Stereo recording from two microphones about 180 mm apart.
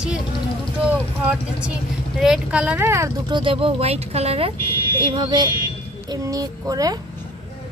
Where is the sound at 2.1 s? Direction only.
Centre (ahead or behind).